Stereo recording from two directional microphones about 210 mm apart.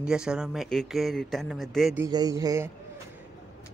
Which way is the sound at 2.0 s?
20° right (ahead or behind).